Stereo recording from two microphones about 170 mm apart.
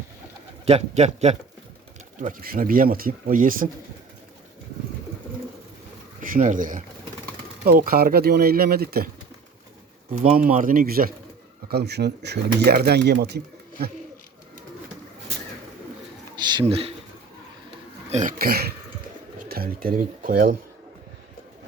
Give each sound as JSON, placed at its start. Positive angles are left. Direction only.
{"t": 0.6, "sound": "a man's voice", "side_deg": -40}
{"t": 2.2, "sound": "speech", "side_deg": -55}
{"t": 6.2, "sound": "speech", "side_deg": -50}
{"t": 7.6, "sound": "speech", "side_deg": -60}
{"t": 10.3, "sound": "speech", "side_deg": -55}
{"t": 11.7, "sound": "speech", "side_deg": -75}
{"t": 16.3, "sound": "bird", "side_deg": -25}
{"t": 18.1, "sound": "speech", "side_deg": -50}